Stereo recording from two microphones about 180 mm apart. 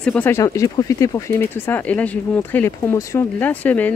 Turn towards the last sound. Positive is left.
turn(degrees=10)  # may be behind; listen again after turning